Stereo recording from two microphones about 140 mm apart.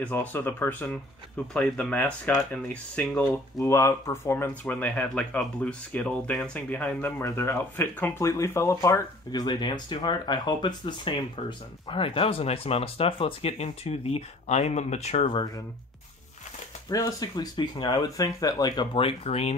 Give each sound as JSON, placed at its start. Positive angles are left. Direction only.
{"t": 0.0, "sound": "speech", "side_deg": 10}
{"t": 3.5, "sound": "speech", "side_deg": 20}
{"t": 15.3, "sound": "speech", "side_deg": 25}
{"t": 16.9, "sound": "speech", "side_deg": 25}